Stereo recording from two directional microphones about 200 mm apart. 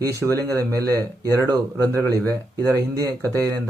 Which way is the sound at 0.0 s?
15° right (ahead or behind).